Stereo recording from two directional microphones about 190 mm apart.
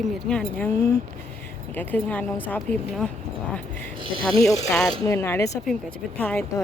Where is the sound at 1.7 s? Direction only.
10° left (ahead or behind).